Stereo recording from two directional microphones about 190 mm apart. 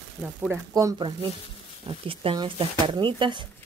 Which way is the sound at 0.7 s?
20° right (ahead or behind).